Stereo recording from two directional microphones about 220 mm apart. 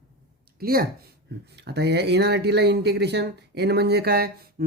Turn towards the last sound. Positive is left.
turn(degrees=-45)  # may be behind; listen again after turning